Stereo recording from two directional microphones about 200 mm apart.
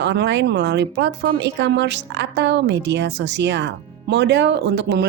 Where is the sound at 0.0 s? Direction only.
60° right (ahead or behind).